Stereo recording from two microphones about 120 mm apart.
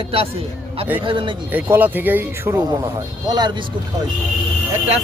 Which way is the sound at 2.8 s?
35° right (ahead or behind).